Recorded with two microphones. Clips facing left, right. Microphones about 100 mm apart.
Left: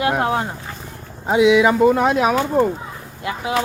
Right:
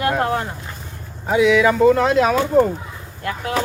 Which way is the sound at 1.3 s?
20° left (ahead or behind).